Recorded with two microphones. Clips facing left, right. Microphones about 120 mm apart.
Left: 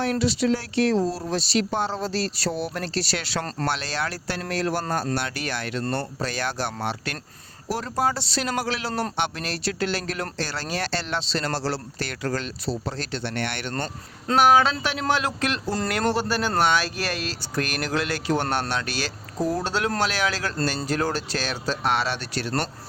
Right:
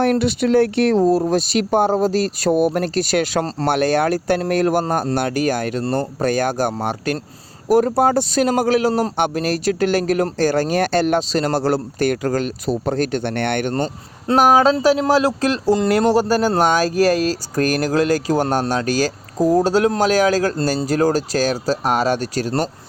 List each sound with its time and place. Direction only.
0.0 s speech: 55° right (ahead or behind)
13.7 s speech: 15° right (ahead or behind)
14.3 s speech: 40° right (ahead or behind)